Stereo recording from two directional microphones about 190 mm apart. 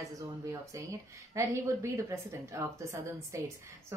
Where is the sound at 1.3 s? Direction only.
15° right (ahead or behind).